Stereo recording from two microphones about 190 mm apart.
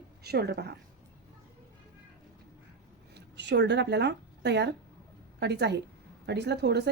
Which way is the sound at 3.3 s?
65° right (ahead or behind).